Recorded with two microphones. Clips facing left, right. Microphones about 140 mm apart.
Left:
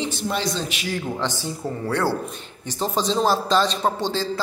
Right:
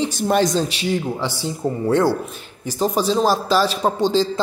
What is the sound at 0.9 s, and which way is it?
A man's voice, 15° right (ahead or behind).